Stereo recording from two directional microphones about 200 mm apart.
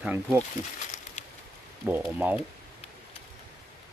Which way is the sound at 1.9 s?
10° right (ahead or behind).